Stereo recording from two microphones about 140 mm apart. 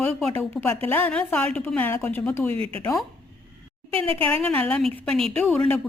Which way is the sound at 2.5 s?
40° right (ahead or behind).